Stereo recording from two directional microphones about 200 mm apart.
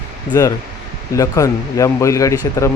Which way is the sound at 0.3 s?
15° left (ahead or behind).